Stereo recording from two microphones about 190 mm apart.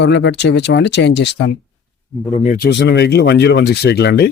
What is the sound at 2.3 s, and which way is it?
Speech, 35° left (ahead or behind).